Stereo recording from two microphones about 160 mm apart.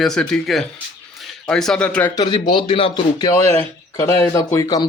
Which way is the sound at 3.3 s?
15° left (ahead or behind).